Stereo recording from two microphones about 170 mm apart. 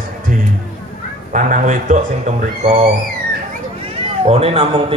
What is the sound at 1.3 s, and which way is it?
Speech, 45° right (ahead or behind).